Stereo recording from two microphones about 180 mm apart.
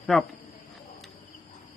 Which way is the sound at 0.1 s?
Centre (ahead or behind).